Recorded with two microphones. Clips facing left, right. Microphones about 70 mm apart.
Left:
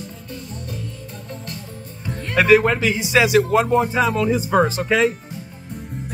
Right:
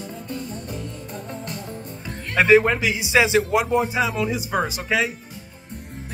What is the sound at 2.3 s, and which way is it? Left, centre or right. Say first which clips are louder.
Speech: left 1 dB; right.